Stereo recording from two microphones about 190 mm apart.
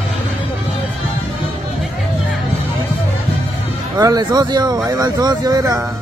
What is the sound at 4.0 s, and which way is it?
Speech, 20° right (ahead or behind).